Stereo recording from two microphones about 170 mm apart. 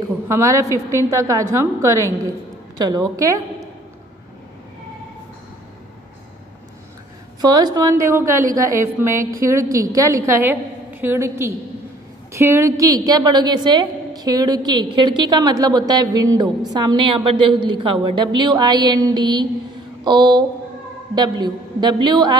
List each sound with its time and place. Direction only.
0.3 s a woman's voice: 20° right (ahead or behind)
7.4 s a woman's voice: 20° right (ahead or behind)